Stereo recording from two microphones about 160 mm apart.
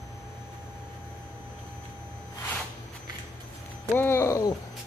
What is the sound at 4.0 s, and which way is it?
Hoot, 15° left (ahead or behind).